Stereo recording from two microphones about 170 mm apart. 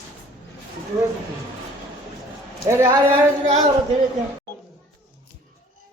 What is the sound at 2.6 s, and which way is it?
Speech, 15° right (ahead or behind).